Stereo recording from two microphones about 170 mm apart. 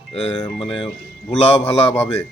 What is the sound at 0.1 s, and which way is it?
A man's voice, 35° left (ahead or behind).